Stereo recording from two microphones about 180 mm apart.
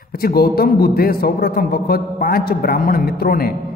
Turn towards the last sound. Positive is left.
turn(degrees=55)  # may be behind; listen again after turning